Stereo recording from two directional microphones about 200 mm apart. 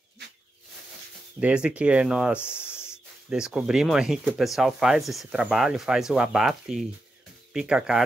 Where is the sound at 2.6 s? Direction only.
10° left (ahead or behind).